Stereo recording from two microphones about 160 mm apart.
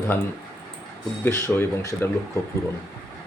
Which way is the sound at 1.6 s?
15° left (ahead or behind).